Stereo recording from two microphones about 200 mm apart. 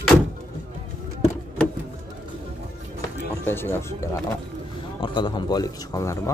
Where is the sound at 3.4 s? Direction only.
10° left (ahead or behind).